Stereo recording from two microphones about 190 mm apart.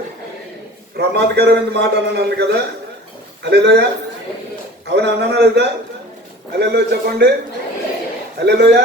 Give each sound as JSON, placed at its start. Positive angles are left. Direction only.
{"t": 0.9, "sound": "a man's voice", "side_deg": -60}
{"t": 4.9, "sound": "a man's voice", "side_deg": -60}
{"t": 8.4, "sound": "a man's voice", "side_deg": -60}